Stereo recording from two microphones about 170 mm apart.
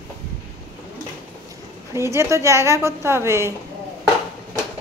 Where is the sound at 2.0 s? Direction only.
15° right (ahead or behind).